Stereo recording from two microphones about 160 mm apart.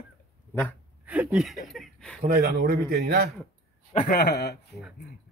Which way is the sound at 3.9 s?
65° left (ahead or behind).